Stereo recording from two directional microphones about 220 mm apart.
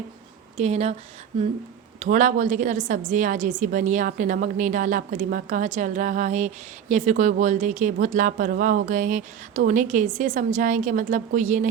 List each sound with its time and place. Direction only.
0.5 s speech: 30° right (ahead or behind)
2.0 s a woman's voice: 35° right (ahead or behind)